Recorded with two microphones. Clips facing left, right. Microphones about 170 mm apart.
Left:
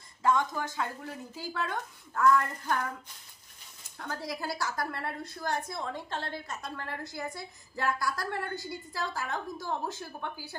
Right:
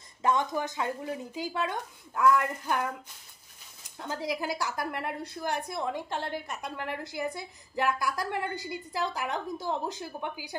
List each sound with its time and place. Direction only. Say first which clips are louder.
0.2 s a woman's voice: right 1 dB; 20° right (ahead or behind)
4.0 s a woman's voice: right 4 dB; 20° right (ahead or behind)